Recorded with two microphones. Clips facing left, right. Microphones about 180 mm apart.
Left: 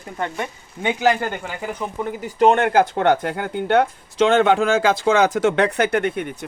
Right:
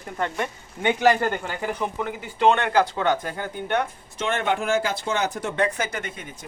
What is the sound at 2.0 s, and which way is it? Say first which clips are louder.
Speech: left 5 dB; 40° left (ahead or behind).